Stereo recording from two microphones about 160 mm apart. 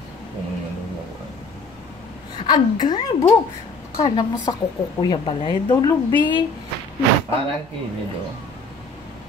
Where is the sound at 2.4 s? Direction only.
25° left (ahead or behind).